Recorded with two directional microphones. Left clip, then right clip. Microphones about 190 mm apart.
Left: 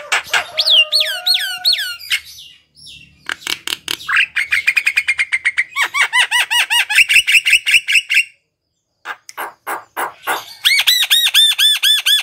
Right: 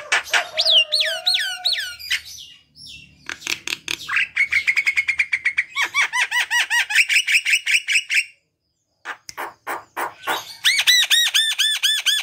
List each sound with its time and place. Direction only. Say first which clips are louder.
0.1 s bird: left 3 dB; centre (ahead or behind)
0.8 s a sound: left 5 dB; 5° left (ahead or behind)
3.3 s bird: left 5 dB; 20° left (ahead or behind)
9.0 s music: left 4 dB; 5° left (ahead or behind)